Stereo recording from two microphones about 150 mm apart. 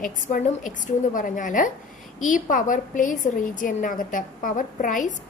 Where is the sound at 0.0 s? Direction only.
60° left (ahead or behind).